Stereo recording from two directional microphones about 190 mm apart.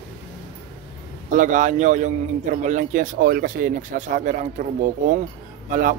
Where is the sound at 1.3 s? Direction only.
40° right (ahead or behind).